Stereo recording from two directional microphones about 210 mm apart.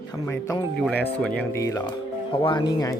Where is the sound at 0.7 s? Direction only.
5° left (ahead or behind).